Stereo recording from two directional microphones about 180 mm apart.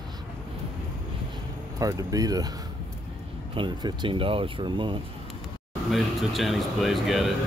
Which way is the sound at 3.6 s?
30° right (ahead or behind).